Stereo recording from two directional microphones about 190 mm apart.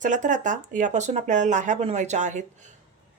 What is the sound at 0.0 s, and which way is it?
Speech, 40° right (ahead or behind).